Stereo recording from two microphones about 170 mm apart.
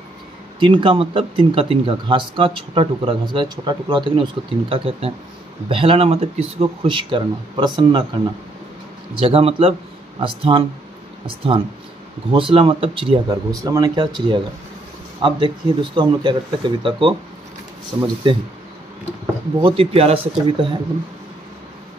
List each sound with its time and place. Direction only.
0.6 s speech: 30° right (ahead or behind)
9.2 s speech: 35° right (ahead or behind)
19.6 s speech: 35° right (ahead or behind)